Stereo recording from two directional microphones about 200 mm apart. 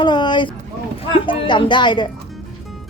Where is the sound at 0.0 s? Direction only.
20° left (ahead or behind).